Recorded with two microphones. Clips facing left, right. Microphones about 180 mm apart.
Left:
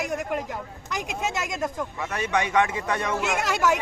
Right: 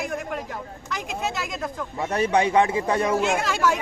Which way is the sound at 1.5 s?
15° left (ahead or behind).